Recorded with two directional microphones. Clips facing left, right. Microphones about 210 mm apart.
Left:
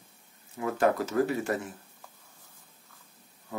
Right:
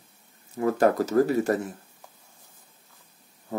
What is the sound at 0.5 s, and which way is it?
Speech, 40° right (ahead or behind).